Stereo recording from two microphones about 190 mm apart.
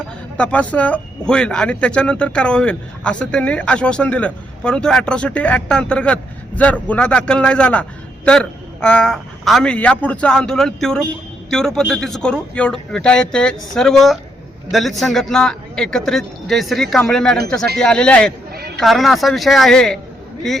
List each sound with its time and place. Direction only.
0.3 s speech: 5° left (ahead or behind)